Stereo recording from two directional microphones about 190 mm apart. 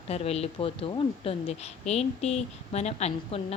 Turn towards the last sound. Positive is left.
turn(degrees=35)  # may be behind; listen again after turning